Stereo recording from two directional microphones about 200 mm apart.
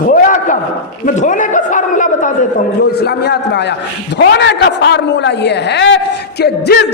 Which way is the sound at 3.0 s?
55° left (ahead or behind).